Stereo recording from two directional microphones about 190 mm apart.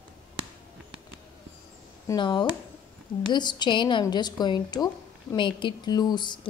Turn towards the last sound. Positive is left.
turn(degrees=25)  # may be behind; listen again after turning